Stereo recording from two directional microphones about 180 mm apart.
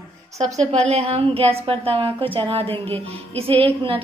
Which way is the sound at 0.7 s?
35° right (ahead or behind).